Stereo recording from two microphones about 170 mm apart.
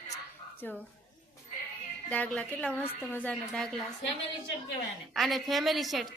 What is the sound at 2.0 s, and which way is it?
A woman's voice, 10° left (ahead or behind).